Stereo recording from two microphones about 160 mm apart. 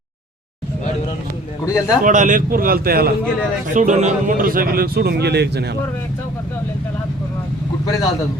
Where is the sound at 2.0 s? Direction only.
55° right (ahead or behind); by 3.1 s 70° right (ahead or behind).